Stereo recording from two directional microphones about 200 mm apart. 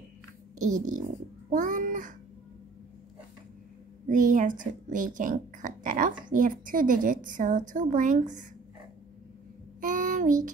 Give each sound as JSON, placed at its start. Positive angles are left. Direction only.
{"t": 0.6, "sound": "a child's voice", "side_deg": -40}
{"t": 4.1, "sound": "speech", "side_deg": -40}
{"t": 9.8, "sound": "child singing", "side_deg": -40}